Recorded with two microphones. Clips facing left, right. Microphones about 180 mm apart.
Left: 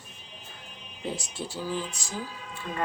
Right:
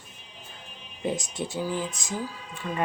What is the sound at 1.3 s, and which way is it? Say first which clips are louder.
Speech: right 3 dB; 15° right (ahead or behind).